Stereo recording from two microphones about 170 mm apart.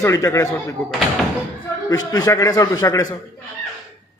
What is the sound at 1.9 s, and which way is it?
A man's voice, 20° left (ahead or behind).